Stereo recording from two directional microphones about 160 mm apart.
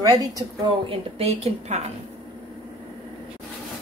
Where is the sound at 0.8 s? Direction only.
40° right (ahead or behind).